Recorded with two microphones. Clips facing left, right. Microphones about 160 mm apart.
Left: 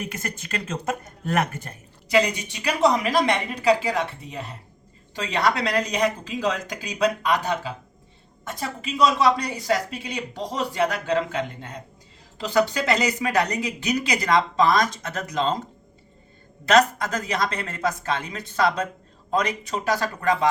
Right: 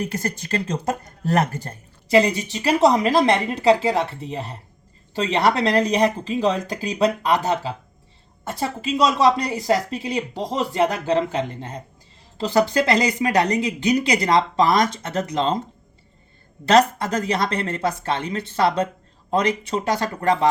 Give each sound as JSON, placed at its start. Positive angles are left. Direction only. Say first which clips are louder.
{"t": 0.0, "sound": "speech", "louder": "right 6 dB", "side_deg": -35}
{"t": 16.6, "sound": "speech", "louder": "right 2 dB", "side_deg": -30}